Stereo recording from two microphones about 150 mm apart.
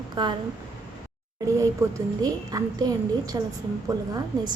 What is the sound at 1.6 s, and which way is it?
A woman's voice, 25° right (ahead or behind).